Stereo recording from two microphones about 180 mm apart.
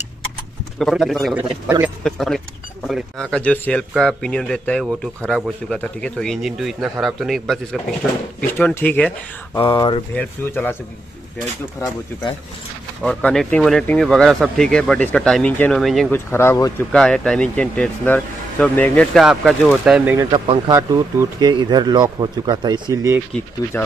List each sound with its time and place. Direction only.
0.7 s speech: centre (ahead or behind)
8.4 s speech: 10° left (ahead or behind)
9.7 s speech: 25° left (ahead or behind)
10.1 s speech: 10° left (ahead or behind)
13.0 s speech: 5° left (ahead or behind)
16.1 s speech: 15° left (ahead or behind)
16.9 s speech: 5° left (ahead or behind)
20.2 s speech: 25° right (ahead or behind)
23.3 s speech: 5° left (ahead or behind)